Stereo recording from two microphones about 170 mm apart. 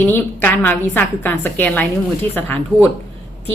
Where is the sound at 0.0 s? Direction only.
10° left (ahead or behind).